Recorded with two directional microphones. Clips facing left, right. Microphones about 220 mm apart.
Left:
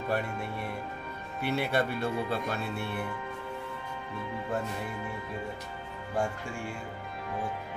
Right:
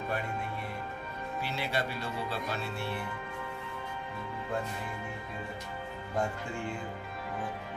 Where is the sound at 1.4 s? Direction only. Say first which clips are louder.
Left 6 dB; 60° left (ahead or behind).